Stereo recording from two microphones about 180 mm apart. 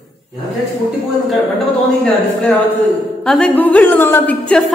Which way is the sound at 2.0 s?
5° left (ahead or behind).